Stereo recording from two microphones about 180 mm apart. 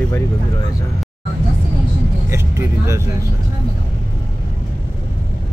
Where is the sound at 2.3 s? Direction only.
15° right (ahead or behind).